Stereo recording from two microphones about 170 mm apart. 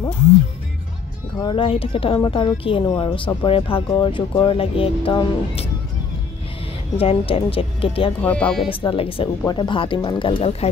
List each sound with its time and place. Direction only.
1.5 s speech: 35° left (ahead or behind)
7.0 s speech: 35° left (ahead or behind)
8.2 s speech: 10° left (ahead or behind)
8.6 s speech: 30° left (ahead or behind)